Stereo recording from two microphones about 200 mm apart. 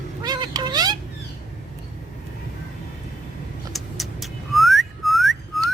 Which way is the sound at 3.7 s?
Centre (ahead or behind).